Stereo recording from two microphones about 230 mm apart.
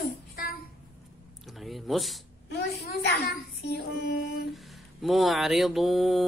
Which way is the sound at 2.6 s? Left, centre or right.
Left.